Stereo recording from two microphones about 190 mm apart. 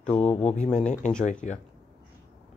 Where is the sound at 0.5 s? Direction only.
40° left (ahead or behind).